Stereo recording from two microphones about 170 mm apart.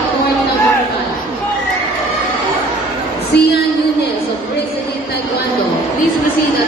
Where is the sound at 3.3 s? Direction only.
75° left (ahead or behind).